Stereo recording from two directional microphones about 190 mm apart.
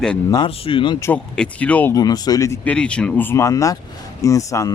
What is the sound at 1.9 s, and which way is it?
Speech, 20° left (ahead or behind).